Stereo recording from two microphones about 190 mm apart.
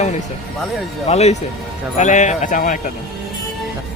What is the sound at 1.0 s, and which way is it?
A man's voice, 35° left (ahead or behind).